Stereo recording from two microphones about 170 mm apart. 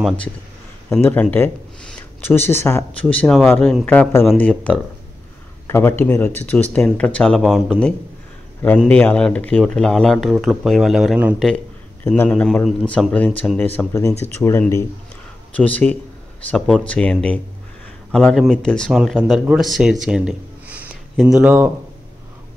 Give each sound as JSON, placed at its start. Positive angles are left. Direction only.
{"t": 1.0, "sound": "speech", "side_deg": 10}
{"t": 11.3, "sound": "a man's voice", "side_deg": 5}